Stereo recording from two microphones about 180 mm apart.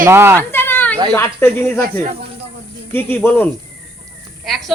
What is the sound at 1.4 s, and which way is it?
Speech, 15° left (ahead or behind).